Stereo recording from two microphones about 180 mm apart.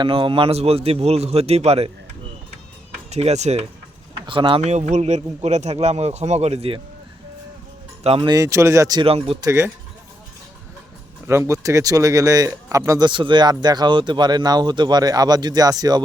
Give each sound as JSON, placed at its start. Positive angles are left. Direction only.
{"t": 0.0, "sound": "speech", "side_deg": -30}
{"t": 3.1, "sound": "speech", "side_deg": -40}
{"t": 8.0, "sound": "speech", "side_deg": -30}
{"t": 9.5, "sound": "speech", "side_deg": -15}
{"t": 11.3, "sound": "speech", "side_deg": -15}